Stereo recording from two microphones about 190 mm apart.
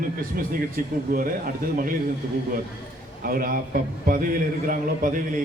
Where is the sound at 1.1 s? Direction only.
45° right (ahead or behind).